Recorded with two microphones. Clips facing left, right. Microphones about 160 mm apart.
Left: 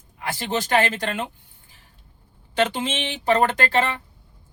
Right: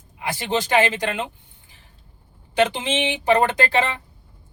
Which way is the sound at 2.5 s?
15° right (ahead or behind).